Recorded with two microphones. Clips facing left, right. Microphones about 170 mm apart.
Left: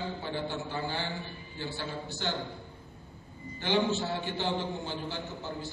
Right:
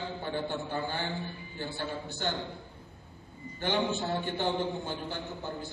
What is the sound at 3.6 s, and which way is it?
A man's voice, 55° right (ahead or behind).